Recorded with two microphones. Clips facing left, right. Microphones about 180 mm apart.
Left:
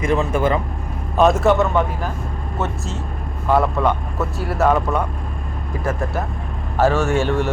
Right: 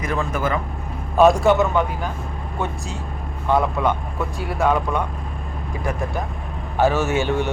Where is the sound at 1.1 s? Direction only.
Centre (ahead or behind).